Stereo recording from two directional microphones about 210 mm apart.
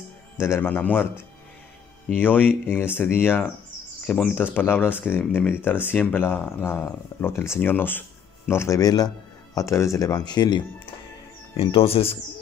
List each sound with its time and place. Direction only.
0.4 s speech: 10° left (ahead or behind); by 12.2 s 25° left (ahead or behind)